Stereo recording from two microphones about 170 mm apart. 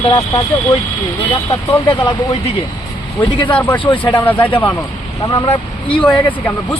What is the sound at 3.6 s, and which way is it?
Speech, 10° left (ahead or behind).